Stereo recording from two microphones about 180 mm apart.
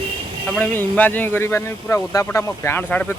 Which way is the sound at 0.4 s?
5° left (ahead or behind).